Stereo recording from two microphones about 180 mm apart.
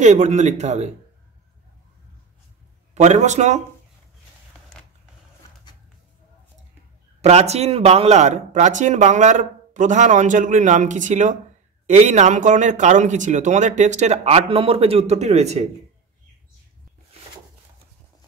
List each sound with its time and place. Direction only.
0.0 s speech: 40° right (ahead or behind)
2.9 s speech: 40° right (ahead or behind)
4.7 s creak: 5° left (ahead or behind)
7.2 s speech: 35° right (ahead or behind)